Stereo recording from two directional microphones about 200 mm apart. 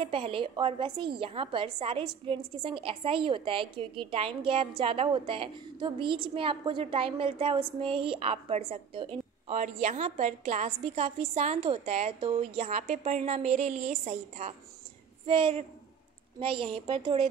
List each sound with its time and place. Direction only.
0.0 s a woman's voice: 25° right (ahead or behind)